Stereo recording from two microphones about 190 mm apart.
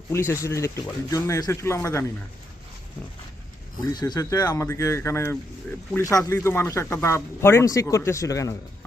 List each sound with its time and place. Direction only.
0.1 s speech: 15° left (ahead or behind)
3.9 s speech: 20° left (ahead or behind)